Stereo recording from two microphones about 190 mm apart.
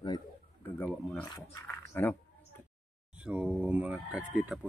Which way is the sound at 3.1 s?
5° right (ahead or behind).